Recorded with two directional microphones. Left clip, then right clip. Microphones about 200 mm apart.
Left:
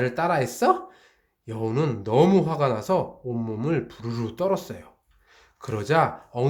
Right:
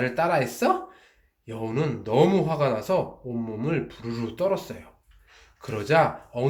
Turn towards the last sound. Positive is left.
turn(degrees=40)  # may be behind; listen again after turning